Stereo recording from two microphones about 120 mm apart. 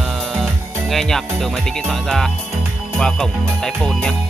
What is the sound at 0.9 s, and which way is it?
Speech, 5° left (ahead or behind).